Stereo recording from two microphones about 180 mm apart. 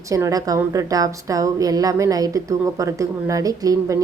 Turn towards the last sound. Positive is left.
turn(degrees=-20)  # may be behind; listen again after turning